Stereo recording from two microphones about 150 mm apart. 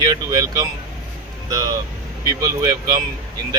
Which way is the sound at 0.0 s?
25° right (ahead or behind).